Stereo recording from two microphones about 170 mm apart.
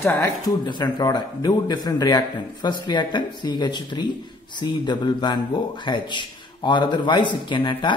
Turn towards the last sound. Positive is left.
turn(degrees=30)  # may be behind; listen again after turning